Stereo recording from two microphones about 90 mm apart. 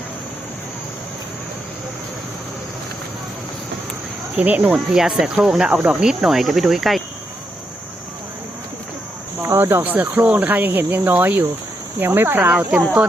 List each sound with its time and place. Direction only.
4.4 s speech: 15° right (ahead or behind)
4.9 s speech: 5° right (ahead or behind)
6.0 s cricket: 5° right (ahead or behind)
9.4 s speech: 25° right (ahead or behind)